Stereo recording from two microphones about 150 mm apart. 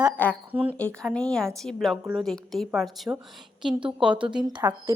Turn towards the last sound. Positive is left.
turn(degrees=-15)  # may be behind; listen again after turning